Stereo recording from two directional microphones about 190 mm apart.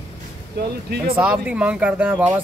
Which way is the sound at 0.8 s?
55° right (ahead or behind).